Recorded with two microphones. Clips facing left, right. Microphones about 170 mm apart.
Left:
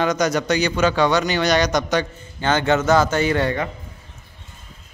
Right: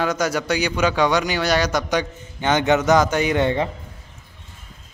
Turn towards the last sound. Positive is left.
turn(degrees=-20)  # may be behind; listen again after turning